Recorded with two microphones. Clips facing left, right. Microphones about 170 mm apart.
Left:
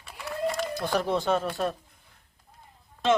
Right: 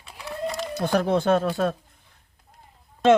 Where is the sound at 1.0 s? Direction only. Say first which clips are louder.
Right 5 dB; 60° right (ahead or behind).